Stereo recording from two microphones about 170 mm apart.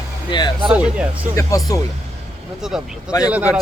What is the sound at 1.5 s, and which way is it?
Speech, 20° left (ahead or behind).